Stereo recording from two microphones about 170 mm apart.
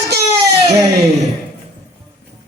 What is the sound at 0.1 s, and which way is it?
Crying, 75° right (ahead or behind).